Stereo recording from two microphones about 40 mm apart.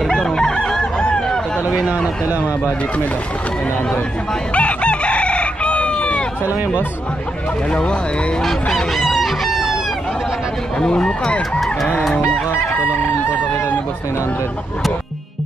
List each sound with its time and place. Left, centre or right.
0.1 s chicken: centre
2.2 s a man's voice: right
4.6 s chicken: left
7.7 s speech: left
8.7 s chicken: centre
10.8 s speech: centre